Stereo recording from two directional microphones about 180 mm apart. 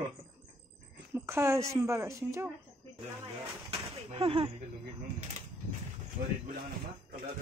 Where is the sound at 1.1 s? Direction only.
15° right (ahead or behind).